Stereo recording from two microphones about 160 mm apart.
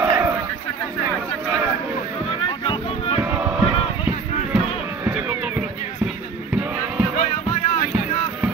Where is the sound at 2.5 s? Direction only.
35° left (ahead or behind).